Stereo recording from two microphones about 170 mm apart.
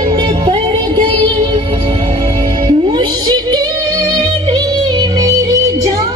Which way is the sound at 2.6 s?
25° right (ahead or behind).